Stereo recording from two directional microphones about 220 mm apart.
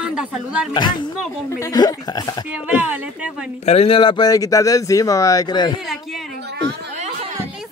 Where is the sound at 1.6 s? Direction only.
15° left (ahead or behind).